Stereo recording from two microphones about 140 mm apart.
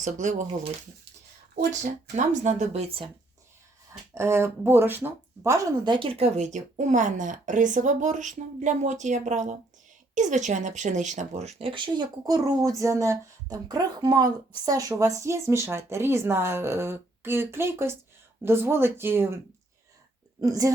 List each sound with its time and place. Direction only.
0.0 s speech: 65° right (ahead or behind)
1.5 s speech: 60° right (ahead or behind); by 3.1 s 45° right (ahead or behind)
4.1 s speech: 20° right (ahead or behind)
5.8 s speech: 35° right (ahead or behind); by 19.4 s 15° right (ahead or behind)
20.4 s speech: 25° right (ahead or behind)